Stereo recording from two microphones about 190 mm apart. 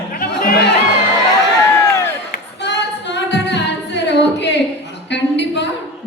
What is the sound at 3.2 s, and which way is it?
Singing, 65° left (ahead or behind).